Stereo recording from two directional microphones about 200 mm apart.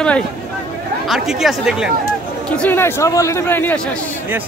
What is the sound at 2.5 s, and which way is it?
Speech, 5° left (ahead or behind).